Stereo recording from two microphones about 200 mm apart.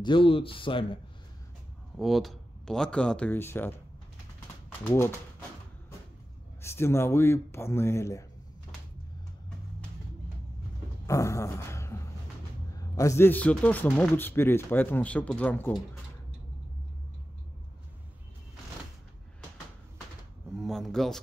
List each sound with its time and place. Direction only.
0.0 s speech: 25° left (ahead or behind)
2.0 s speech: centre (ahead or behind)
4.8 s a man's voice: 10° left (ahead or behind)
6.6 s a man's voice: 10° left (ahead or behind)
11.1 s a sound: 15° left (ahead or behind)
12.7 s a man's voice: 15° left (ahead or behind)
20.5 s speech: centre (ahead or behind)